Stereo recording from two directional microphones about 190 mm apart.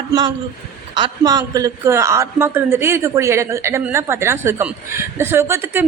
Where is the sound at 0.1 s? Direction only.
20° right (ahead or behind).